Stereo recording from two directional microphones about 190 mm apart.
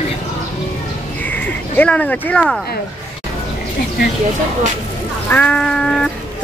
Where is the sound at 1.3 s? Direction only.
10° left (ahead or behind).